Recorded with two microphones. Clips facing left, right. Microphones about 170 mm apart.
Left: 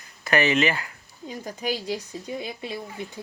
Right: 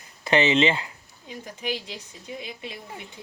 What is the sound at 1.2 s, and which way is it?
A woman's voice, 40° left (ahead or behind).